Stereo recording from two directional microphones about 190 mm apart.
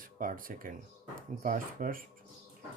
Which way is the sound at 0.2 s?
45° right (ahead or behind).